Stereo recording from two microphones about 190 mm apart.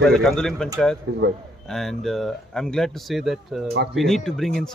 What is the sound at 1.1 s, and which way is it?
Speech, 65° right (ahead or behind).